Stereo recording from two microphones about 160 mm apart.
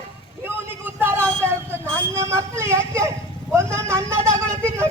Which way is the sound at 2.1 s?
15° right (ahead or behind).